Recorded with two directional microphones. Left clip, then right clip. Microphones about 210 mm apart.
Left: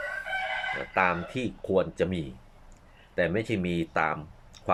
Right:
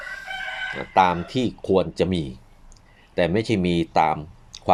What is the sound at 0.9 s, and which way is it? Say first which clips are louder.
Speech: right 9 dB; 25° right (ahead or behind).